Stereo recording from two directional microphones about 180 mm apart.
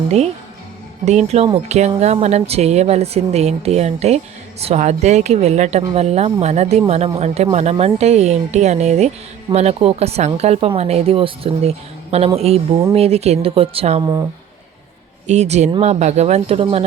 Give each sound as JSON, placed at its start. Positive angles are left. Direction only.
{"t": 1.0, "sound": "speech", "side_deg": -40}
{"t": 14.0, "sound": "speech", "side_deg": -20}
{"t": 15.3, "sound": "speech", "side_deg": -40}